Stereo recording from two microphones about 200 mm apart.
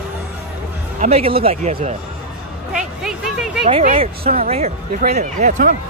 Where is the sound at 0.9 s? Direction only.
30° right (ahead or behind).